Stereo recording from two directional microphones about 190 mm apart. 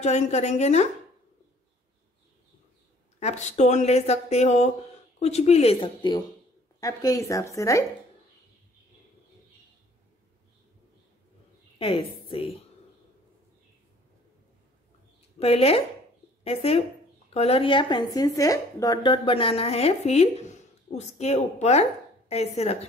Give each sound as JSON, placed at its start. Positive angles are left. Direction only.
{"t": 0.0, "sound": "a woman's voice", "side_deg": 35}
{"t": 3.2, "sound": "a woman's voice", "side_deg": 35}
{"t": 11.8, "sound": "a woman's voice", "side_deg": 30}
{"t": 15.3, "sound": "a woman's voice", "side_deg": 30}